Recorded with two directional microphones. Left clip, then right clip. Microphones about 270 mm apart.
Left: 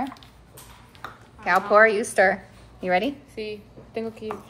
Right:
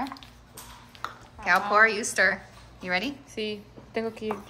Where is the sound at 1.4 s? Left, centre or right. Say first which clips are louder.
Left 3 dB; centre.